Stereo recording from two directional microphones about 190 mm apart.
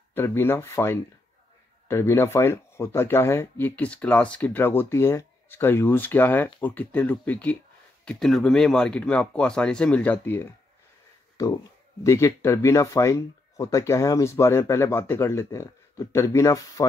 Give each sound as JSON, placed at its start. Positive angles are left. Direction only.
{"t": 0.1, "sound": "speech", "side_deg": 10}